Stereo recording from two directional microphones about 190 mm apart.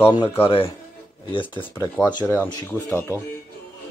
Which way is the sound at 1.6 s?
10° left (ahead or behind).